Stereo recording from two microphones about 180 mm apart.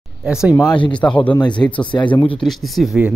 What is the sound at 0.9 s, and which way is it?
Speech, 5° left (ahead or behind).